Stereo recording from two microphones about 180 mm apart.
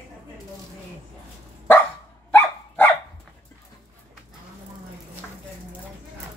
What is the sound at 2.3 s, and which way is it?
Dog, 10° left (ahead or behind).